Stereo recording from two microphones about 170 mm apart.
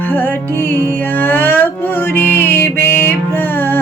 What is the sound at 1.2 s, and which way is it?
Music, 10° left (ahead or behind).